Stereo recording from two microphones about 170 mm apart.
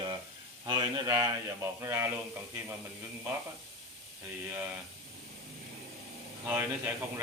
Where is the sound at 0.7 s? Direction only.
25° right (ahead or behind).